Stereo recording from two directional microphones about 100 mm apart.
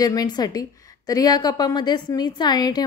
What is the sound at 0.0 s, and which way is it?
A woman's voice, 40° left (ahead or behind).